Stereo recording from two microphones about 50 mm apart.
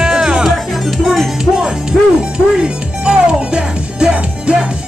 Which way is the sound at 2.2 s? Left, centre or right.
Centre.